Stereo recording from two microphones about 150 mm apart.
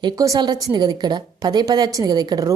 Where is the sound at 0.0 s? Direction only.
25° right (ahead or behind).